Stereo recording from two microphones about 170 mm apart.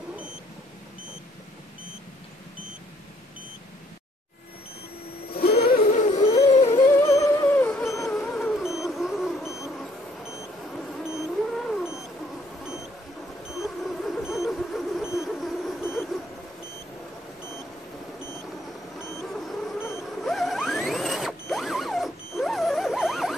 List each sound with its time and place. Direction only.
5.6 s music: 50° left (ahead or behind); by 6.9 s 35° left (ahead or behind)
6.9 s music: 15° left (ahead or behind)
8.2 s music: centre (ahead or behind)
11.5 s cat: centre (ahead or behind)
13.6 s vehicle: centre (ahead or behind)
15.8 s vehicle: 15° left (ahead or behind)
19.3 s vehicle: centre (ahead or behind)
20.1 s mechanisms: centre (ahead or behind)